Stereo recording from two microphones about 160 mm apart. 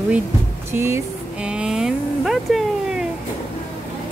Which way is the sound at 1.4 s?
5° right (ahead or behind).